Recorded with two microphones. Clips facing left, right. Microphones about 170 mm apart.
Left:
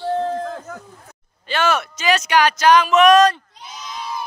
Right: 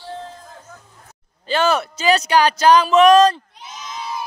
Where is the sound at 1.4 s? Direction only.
35° right (ahead or behind).